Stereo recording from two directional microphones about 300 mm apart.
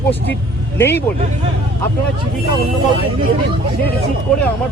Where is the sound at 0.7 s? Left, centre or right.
Centre.